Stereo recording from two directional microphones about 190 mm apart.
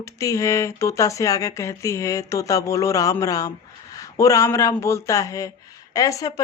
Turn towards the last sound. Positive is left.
turn(degrees=20)  # may be behind; listen again after turning